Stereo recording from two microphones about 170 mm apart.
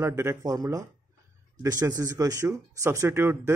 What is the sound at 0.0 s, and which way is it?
Speech, 15° right (ahead or behind).